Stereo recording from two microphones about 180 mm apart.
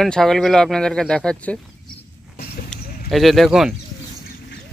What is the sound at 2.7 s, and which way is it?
Speech, centre (ahead or behind).